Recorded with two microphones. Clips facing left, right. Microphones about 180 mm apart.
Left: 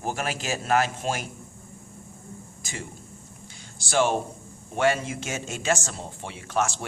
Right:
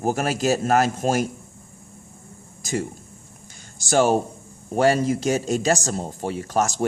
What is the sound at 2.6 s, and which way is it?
A man's voice, 40° right (ahead or behind).